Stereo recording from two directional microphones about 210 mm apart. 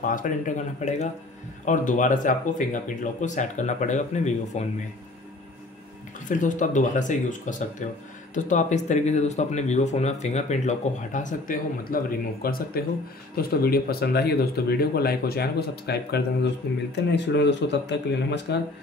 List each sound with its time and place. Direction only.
0.0 s speech: 40° left (ahead or behind)
6.2 s speech: 40° left (ahead or behind); by 18.6 s 55° left (ahead or behind)